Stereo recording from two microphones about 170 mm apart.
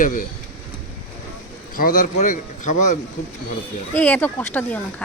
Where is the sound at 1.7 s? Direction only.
55° left (ahead or behind).